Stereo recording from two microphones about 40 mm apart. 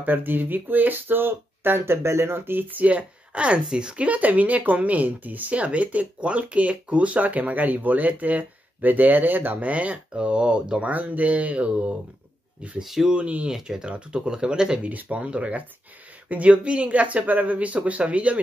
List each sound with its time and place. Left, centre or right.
0.0 s speech: right
2.7 s speech: right
9.6 s speech: right
10.9 s speech: right
12.8 s speech: centre
13.1 s speech: right
13.5 s speech: centre
14.9 s speech: right